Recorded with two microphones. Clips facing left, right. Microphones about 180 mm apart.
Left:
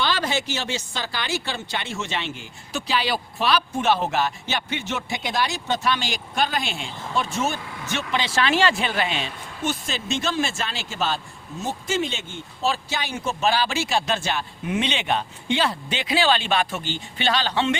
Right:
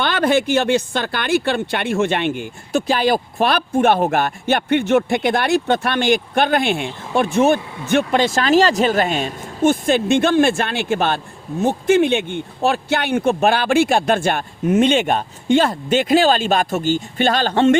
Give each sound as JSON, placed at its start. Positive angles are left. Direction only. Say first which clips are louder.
{"t": 0.0, "sound": "speech", "louder": "right 8 dB", "side_deg": -55}